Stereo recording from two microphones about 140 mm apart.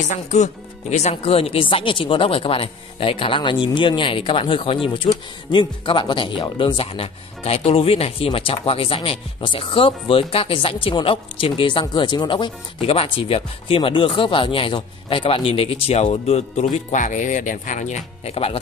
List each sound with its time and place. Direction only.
0.1 s speech: 60° left (ahead or behind)
1.1 s speech: 45° left (ahead or behind)
12.8 s speech: 45° left (ahead or behind)